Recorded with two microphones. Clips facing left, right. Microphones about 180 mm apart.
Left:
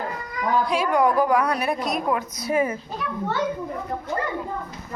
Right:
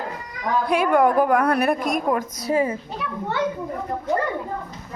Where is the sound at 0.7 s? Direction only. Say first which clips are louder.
Right 5 dB; 55° right (ahead or behind).